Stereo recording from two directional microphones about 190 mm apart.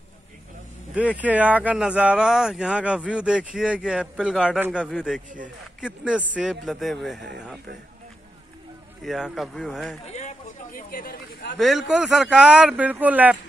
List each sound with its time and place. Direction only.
0.9 s speech: 5° right (ahead or behind)
9.0 s speech: centre (ahead or behind)
10.0 s chatter: 40° left (ahead or behind)
11.5 s speech: centre (ahead or behind)